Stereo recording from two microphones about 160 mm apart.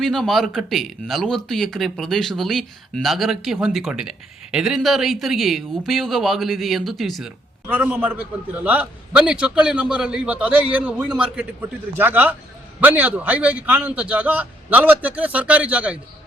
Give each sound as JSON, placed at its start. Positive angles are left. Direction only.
{"t": 0.0, "sound": "a man's voice", "side_deg": 0}